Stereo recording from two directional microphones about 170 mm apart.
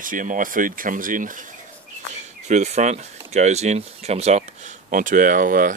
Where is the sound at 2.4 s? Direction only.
40° right (ahead or behind).